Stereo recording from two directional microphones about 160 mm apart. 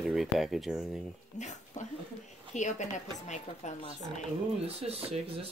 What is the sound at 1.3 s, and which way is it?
Speech, 45° left (ahead or behind).